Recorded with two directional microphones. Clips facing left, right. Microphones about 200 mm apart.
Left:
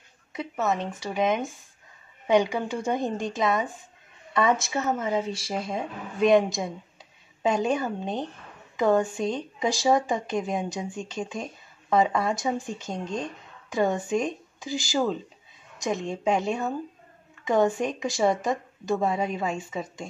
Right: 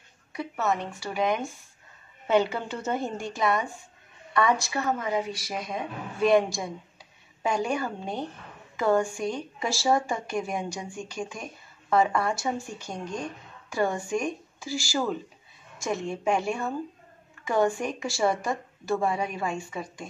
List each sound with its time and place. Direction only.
0.3 s a woman's voice: 20° left (ahead or behind)